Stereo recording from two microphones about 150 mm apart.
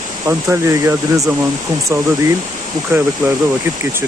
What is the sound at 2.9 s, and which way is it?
Speech, 15° right (ahead or behind).